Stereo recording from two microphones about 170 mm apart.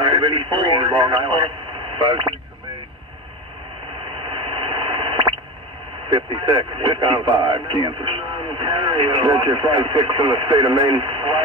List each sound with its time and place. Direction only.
0.0 s speech: 25° right (ahead or behind)
4.2 s radio: 30° right (ahead or behind)
6.1 s speech: 25° right (ahead or behind)